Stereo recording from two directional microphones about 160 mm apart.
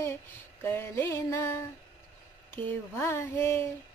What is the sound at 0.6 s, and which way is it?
Female singing, 15° left (ahead or behind).